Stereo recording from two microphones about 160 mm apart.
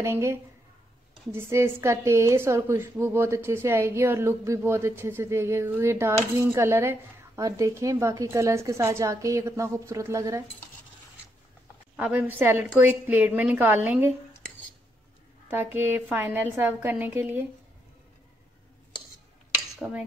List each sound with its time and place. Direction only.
0.0 s a woman's voice: 15° right (ahead or behind)
12.0 s a woman's voice: 10° right (ahead or behind)
15.5 s a woman's voice: 15° right (ahead or behind)
19.8 s dishes: 5° right (ahead or behind)